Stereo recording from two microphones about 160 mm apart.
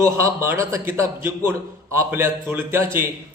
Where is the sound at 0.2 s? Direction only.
15° right (ahead or behind).